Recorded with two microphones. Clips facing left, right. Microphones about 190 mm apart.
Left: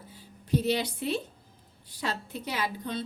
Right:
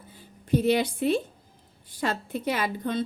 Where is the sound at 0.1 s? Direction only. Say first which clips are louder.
Right 3 dB; 55° right (ahead or behind).